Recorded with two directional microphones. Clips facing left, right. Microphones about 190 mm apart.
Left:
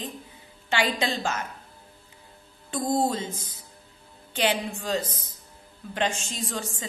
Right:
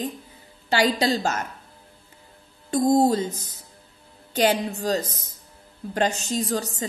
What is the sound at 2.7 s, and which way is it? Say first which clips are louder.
A woman's voice: right 7 dB; 40° right (ahead or behind).